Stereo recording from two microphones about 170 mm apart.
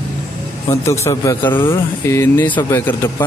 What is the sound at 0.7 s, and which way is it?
Speech, 15° left (ahead or behind).